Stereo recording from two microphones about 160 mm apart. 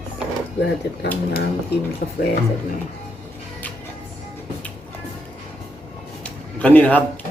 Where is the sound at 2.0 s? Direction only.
65° left (ahead or behind).